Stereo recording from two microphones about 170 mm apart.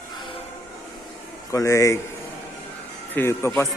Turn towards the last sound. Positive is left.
turn(degrees=15)  # may be behind; listen again after turning